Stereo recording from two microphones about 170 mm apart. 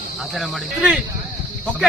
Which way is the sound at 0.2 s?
Centre (ahead or behind).